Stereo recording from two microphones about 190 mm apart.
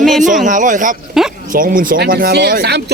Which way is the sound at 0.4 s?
45° right (ahead or behind).